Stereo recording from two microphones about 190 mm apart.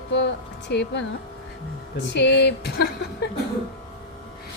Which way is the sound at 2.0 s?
65° left (ahead or behind).